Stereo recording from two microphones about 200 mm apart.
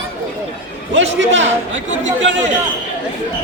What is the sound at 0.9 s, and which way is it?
Speech, 65° right (ahead or behind).